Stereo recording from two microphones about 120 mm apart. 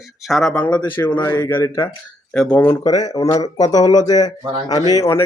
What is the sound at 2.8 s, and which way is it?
Speech, 30° left (ahead or behind).